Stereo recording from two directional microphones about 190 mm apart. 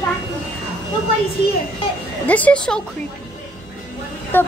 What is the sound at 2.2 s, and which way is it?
Speech, 10° left (ahead or behind).